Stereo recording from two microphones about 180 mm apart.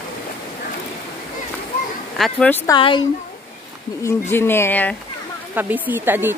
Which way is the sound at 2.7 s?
30° left (ahead or behind).